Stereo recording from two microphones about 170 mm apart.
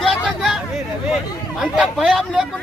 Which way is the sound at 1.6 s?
5° right (ahead or behind).